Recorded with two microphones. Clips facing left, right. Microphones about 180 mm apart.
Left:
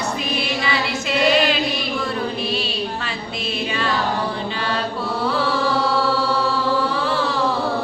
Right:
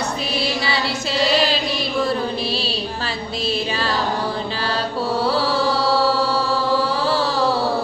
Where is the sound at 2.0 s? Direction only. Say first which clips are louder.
Right 3 dB; 35° right (ahead or behind).